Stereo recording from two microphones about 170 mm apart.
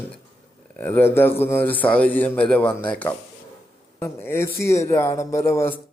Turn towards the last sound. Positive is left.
turn(degrees=15)  # may be behind; listen again after turning